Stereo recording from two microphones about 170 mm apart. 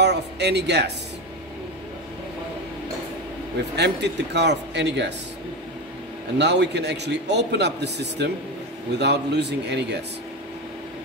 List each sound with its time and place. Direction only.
0.0 s speech: 80° right
3.7 s speech: 85° right
6.3 s a man's voice: 90° right